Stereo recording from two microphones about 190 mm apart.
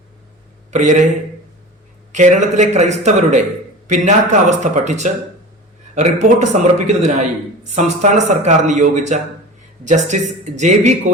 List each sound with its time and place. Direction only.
0.7 s speech: 40° right (ahead or behind)
2.1 s speech: 40° right (ahead or behind)